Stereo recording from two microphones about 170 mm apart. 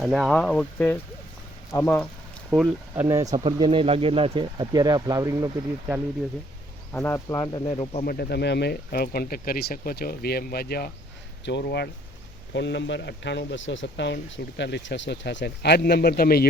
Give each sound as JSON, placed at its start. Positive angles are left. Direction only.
{"t": 0.0, "sound": "speech", "side_deg": 0}
{"t": 2.5, "sound": "speech", "side_deg": -10}
{"t": 6.9, "sound": "speech", "side_deg": 15}
{"t": 7.7, "sound": "speech", "side_deg": 40}
{"t": 8.0, "sound": "speech", "side_deg": 60}
{"t": 11.4, "sound": "speech", "side_deg": 80}
{"t": 12.5, "sound": "speech", "side_deg": 90}